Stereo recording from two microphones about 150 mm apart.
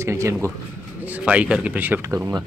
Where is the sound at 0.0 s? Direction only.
20° right (ahead or behind).